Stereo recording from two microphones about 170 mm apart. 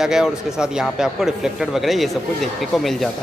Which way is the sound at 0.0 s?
5° right (ahead or behind).